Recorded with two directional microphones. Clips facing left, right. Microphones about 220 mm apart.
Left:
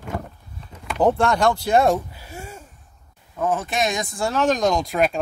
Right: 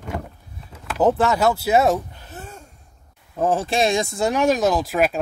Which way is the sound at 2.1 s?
10° left (ahead or behind).